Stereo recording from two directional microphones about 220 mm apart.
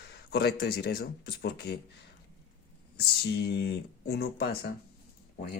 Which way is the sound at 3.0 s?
45° left (ahead or behind).